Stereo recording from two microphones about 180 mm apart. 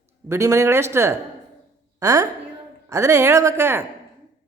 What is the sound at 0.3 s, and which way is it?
A woman's voice, 15° right (ahead or behind).